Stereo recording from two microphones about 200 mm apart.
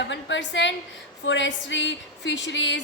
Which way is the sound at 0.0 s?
65° left (ahead or behind).